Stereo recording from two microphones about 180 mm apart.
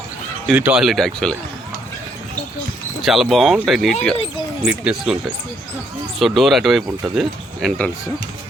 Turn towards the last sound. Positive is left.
turn(degrees=5)  # may be behind; listen again after turning